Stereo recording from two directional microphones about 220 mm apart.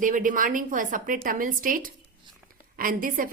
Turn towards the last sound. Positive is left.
turn(degrees=-40)  # may be behind; listen again after turning